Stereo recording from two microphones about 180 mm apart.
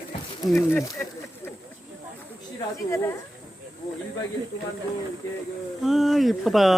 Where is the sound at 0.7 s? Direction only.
10° left (ahead or behind).